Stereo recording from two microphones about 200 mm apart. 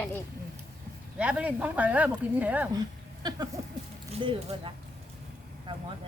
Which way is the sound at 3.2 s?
20° right (ahead or behind).